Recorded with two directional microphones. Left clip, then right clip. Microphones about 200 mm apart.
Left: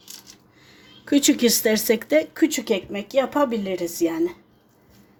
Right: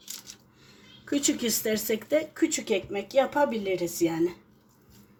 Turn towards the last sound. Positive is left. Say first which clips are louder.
# left 3 dB
turn(degrees=35)  # may be behind; listen again after turning